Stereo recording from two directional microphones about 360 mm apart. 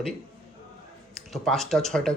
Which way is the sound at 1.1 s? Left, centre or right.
Centre.